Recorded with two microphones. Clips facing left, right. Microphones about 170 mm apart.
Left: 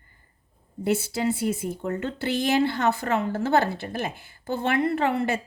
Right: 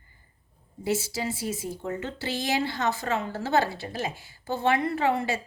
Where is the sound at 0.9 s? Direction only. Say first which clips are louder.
Left 4 dB; 60° left (ahead or behind).